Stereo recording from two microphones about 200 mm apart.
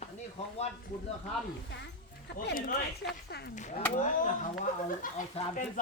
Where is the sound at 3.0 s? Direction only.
60° left (ahead or behind).